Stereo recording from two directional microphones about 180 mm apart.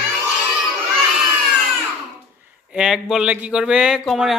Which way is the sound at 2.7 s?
5° right (ahead or behind).